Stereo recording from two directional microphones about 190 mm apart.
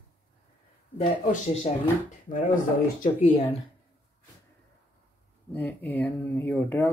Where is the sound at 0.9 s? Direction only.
40° left (ahead or behind).